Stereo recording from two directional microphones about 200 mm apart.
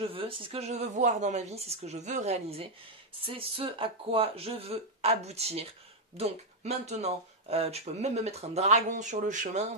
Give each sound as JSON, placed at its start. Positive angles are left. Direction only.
{"t": 0.0, "sound": "speech", "side_deg": -25}